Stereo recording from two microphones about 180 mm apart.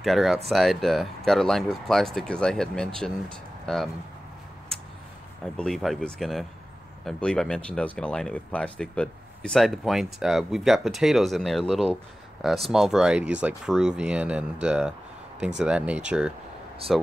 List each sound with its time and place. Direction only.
0.0 s speech: centre (ahead or behind)
5.4 s speech: centre (ahead or behind)